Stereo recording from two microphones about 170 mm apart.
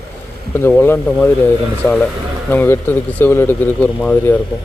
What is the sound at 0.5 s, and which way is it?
Speech, 15° left (ahead or behind).